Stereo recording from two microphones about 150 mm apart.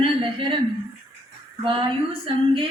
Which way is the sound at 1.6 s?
35° right (ahead or behind).